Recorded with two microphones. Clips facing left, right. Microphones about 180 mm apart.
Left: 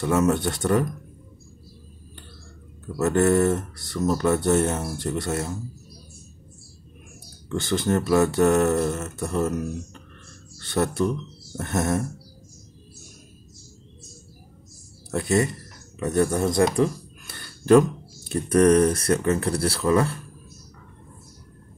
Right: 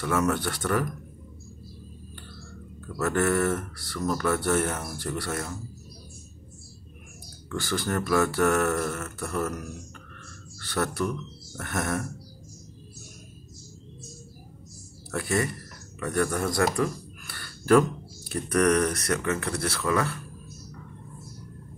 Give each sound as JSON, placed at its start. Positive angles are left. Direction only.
{"t": 0.0, "sound": "speech", "side_deg": 25}
{"t": 3.0, "sound": "speech", "side_deg": 25}
{"t": 7.4, "sound": "speech", "side_deg": 20}
{"t": 15.0, "sound": "speech", "side_deg": 20}
{"t": 16.7, "sound": "a sound", "side_deg": 20}
{"t": 18.3, "sound": "speech", "side_deg": 25}